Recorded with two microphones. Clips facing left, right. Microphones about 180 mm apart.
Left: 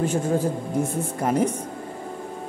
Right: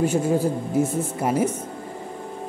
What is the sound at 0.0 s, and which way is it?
A woman's voice, 10° right (ahead or behind).